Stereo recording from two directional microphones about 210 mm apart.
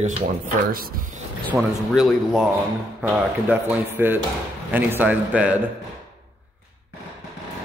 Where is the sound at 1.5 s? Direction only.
Centre (ahead or behind).